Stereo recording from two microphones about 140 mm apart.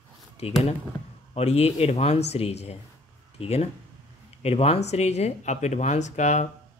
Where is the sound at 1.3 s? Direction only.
50° left (ahead or behind).